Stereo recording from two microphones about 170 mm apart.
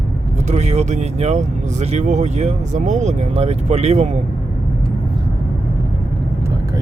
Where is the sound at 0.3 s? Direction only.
40° right (ahead or behind).